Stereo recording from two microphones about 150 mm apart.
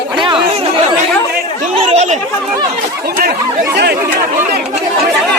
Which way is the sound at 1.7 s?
45° right (ahead or behind).